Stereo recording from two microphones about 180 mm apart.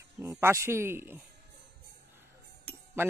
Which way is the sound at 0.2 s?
15° right (ahead or behind).